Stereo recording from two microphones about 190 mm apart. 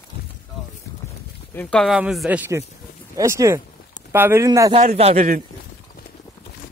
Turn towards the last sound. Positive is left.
turn(degrees=-40)  # may be behind; listen again after turning